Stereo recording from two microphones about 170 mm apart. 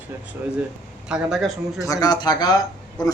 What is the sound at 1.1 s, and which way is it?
Speech, centre (ahead or behind).